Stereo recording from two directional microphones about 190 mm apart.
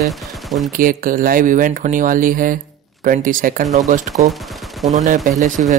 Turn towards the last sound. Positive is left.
turn(degrees=-40)  # may be behind; listen again after turning